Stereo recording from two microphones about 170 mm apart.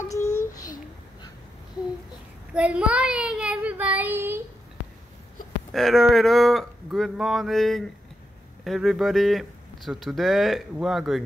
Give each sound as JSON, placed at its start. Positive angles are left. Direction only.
{"t": 0.1, "sound": "a sound", "side_deg": 15}
{"t": 2.5, "sound": "child singing", "side_deg": -5}
{"t": 5.7, "sound": "speech", "side_deg": 0}